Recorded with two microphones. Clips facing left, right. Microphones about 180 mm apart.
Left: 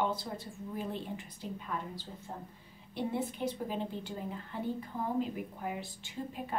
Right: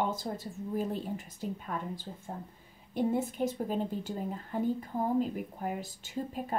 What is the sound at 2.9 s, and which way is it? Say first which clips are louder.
A woman's voice: right 5 dB; 45° right (ahead or behind).